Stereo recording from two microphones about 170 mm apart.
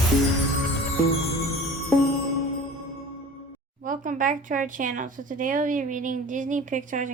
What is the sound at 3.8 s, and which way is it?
Speech, 50° right (ahead or behind).